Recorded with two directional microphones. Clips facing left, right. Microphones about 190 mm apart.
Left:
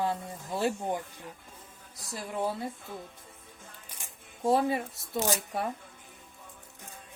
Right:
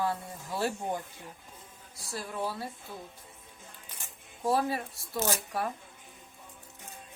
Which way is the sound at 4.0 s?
20° left (ahead or behind).